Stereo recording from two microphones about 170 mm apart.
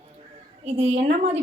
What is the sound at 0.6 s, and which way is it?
Speech, 40° right (ahead or behind).